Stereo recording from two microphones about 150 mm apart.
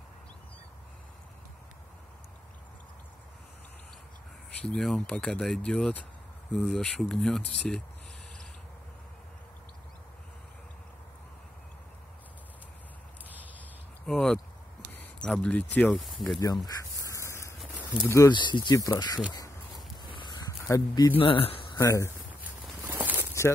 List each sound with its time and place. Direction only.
4.6 s speech: centre (ahead or behind)
14.0 s speech: 5° left (ahead or behind)
14.9 s a sound: 5° left (ahead or behind)
15.8 s speech: centre (ahead or behind)
16.3 s speech: 25° left (ahead or behind)
17.1 s a sound: 20° left (ahead or behind)
18.0 s speech: 20° left (ahead or behind)
18.3 s speech: 30° left (ahead or behind)
19.3 s a sound: 25° left (ahead or behind)
20.6 s speech: 25° left (ahead or behind)
21.2 s speech: 35° left (ahead or behind)
21.7 s speech: 20° left (ahead or behind)
22.4 s a sound: 10° right (ahead or behind)